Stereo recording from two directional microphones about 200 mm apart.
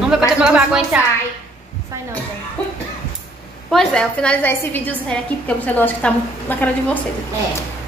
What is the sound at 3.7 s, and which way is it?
A woman's voice, 5° left (ahead or behind).